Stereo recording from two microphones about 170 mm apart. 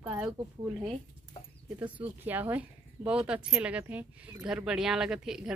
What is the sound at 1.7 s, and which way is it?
Speech, 10° right (ahead or behind).